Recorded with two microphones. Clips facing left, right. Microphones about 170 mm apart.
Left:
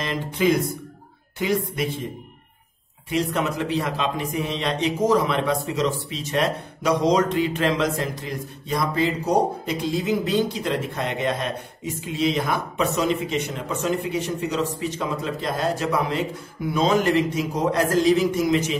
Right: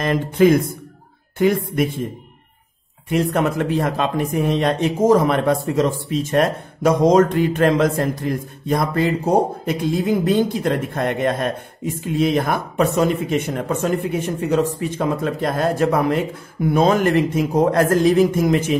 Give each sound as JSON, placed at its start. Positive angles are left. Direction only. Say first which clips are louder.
{"t": 0.0, "sound": "a man's voice", "louder": "right 7 dB", "side_deg": -50}
{"t": 3.1, "sound": "a man's voice", "louder": "right 5 dB", "side_deg": -50}